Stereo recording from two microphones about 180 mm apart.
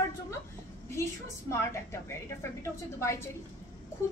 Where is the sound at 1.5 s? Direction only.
15° left (ahead or behind).